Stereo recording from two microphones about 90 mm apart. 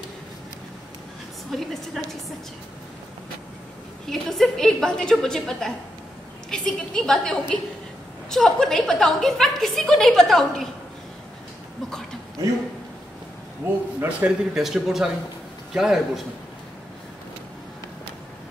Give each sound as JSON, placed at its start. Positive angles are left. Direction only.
{"t": 1.5, "sound": "a woman's voice", "side_deg": 5}
{"t": 4.0, "sound": "a woman's voice", "side_deg": 5}
{"t": 13.6, "sound": "a man's voice", "side_deg": -30}
{"t": 13.9, "sound": "a man's voice", "side_deg": -15}
{"t": 14.6, "sound": "a woman's voice", "side_deg": -5}